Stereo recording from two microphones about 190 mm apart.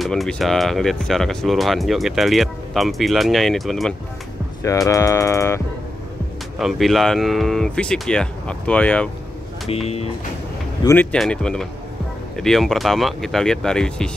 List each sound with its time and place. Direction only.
0.0 s speech: centre (ahead or behind)
4.6 s speech: 15° left (ahead or behind)
6.6 s speech: centre (ahead or behind)
9.7 s speech: 30° left (ahead or behind)
10.8 s speech: 10° left (ahead or behind)